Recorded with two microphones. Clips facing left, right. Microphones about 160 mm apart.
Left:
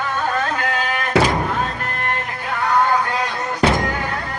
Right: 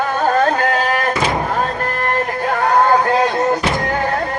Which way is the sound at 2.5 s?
45° right (ahead or behind).